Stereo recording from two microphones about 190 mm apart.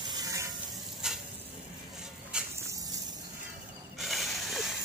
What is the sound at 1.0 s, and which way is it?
Sizzle, 5° right (ahead or behind).